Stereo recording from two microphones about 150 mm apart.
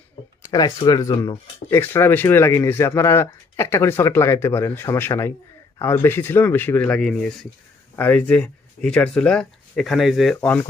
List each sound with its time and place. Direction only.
0.5 s speech: 25° left (ahead or behind); by 10.3 s centre (ahead or behind)